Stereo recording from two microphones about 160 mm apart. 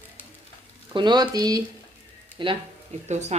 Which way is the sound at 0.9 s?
25° right (ahead or behind).